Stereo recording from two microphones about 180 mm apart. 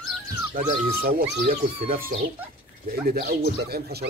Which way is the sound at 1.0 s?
60° right (ahead or behind).